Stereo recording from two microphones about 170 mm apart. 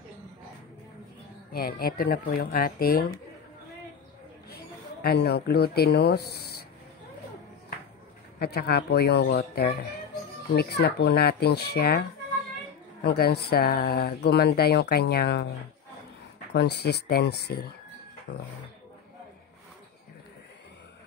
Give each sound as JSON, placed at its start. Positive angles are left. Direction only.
{"t": 1.5, "sound": "speech", "side_deg": 65}
{"t": 4.5, "sound": "speech", "side_deg": 70}
{"t": 8.4, "sound": "speech", "side_deg": 70}
{"t": 13.0, "sound": "speech", "side_deg": 70}
{"t": 16.5, "sound": "speech", "side_deg": 75}